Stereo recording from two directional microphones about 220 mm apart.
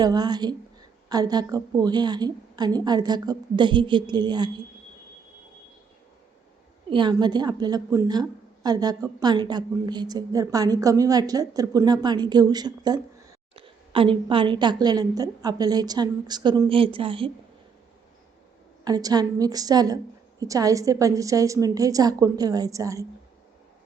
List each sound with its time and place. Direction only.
0.0 s a woman's voice: 20° right (ahead or behind)
6.9 s a woman's voice: 20° right (ahead or behind)
18.9 s a woman's voice: 15° right (ahead or behind)